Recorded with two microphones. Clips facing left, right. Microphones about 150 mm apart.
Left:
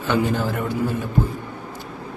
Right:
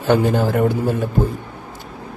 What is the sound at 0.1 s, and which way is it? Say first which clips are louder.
Speech: right 5 dB; 55° right (ahead or behind).